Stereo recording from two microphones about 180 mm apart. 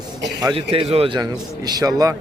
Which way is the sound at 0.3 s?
25° right (ahead or behind).